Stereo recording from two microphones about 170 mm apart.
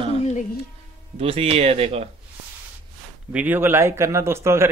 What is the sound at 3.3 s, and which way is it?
A man's voice, 10° right (ahead or behind).